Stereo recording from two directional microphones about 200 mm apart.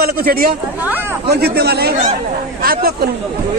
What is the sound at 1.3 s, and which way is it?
Speech, 55° right (ahead or behind).